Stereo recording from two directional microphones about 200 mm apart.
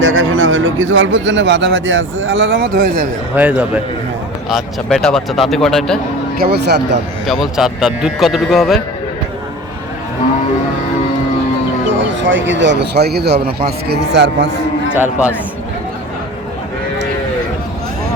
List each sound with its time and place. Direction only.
0.0 s speech: 65° right (ahead or behind); by 3.1 s 45° right (ahead or behind)
3.3 s a man's voice: 5° right (ahead or behind)
6.4 s a man's voice: 55° right (ahead or behind)
7.3 s a man's voice: centre (ahead or behind)
12.2 s a man's voice: 70° right (ahead or behind)
14.9 s a man's voice: 10° right (ahead or behind)